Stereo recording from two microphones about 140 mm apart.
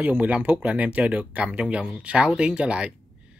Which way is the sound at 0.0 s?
10° right (ahead or behind).